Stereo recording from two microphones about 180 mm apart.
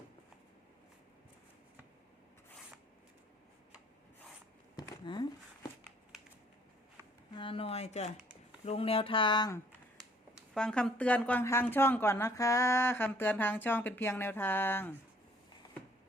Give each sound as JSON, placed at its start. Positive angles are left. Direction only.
{"t": 4.8, "sound": "a sound", "side_deg": 25}
{"t": 7.3, "sound": "speech", "side_deg": 30}
{"t": 10.5, "sound": "a woman's voice", "side_deg": 5}